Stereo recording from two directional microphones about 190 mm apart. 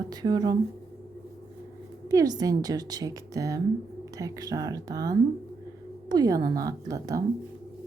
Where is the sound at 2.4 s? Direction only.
20° right (ahead or behind).